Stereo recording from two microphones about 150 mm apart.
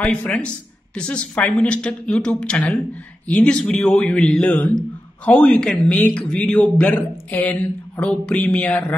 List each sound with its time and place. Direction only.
0.0 s a woman's voice: 10° left (ahead or behind)